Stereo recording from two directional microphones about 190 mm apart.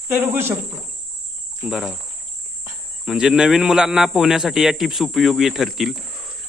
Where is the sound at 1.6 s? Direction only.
5° right (ahead or behind).